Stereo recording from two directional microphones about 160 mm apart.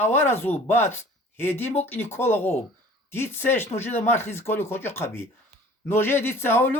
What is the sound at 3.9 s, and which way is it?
Speech, 45° left (ahead or behind).